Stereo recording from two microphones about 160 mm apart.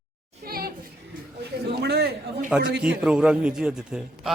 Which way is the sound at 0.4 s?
70° right (ahead or behind).